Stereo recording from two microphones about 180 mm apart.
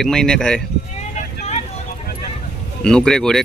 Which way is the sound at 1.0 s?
40° left (ahead or behind).